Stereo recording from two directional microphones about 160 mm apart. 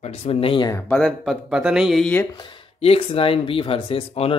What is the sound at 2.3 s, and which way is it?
Speech, 35° left (ahead or behind).